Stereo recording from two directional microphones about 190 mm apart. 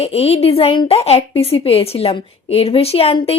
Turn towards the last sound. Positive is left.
turn(degrees=30)  # may be behind; listen again after turning